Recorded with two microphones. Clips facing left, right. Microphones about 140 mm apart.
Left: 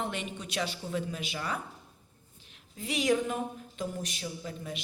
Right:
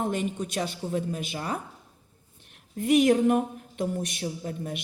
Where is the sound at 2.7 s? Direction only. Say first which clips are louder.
Right 8 dB; 55° right (ahead or behind).